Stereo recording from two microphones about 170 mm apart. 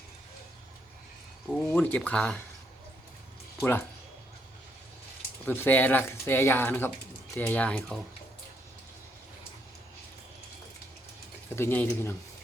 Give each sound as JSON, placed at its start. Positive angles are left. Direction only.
{"t": 1.5, "sound": "speech", "side_deg": 5}
{"t": 5.5, "sound": "speech", "side_deg": 10}
{"t": 11.5, "sound": "speech", "side_deg": 10}